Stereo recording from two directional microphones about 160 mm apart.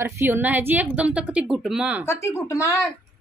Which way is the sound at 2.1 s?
15° left (ahead or behind).